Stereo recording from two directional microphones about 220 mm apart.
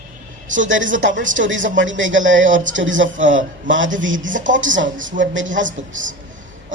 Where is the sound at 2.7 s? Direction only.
60° right (ahead or behind).